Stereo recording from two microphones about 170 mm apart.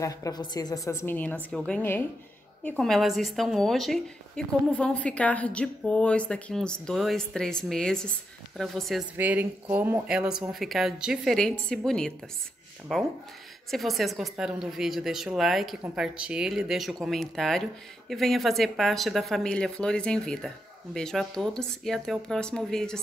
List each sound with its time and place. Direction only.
0.0 s a woman's voice: 20° left (ahead or behind); by 9.0 s centre (ahead or behind)
9.1 s speech: 10° right (ahead or behind)